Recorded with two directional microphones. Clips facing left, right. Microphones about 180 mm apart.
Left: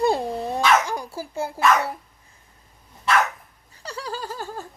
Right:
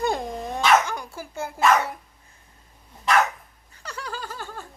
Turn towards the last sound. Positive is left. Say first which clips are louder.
# left 4 dB
turn(degrees=35)  # may be behind; listen again after turning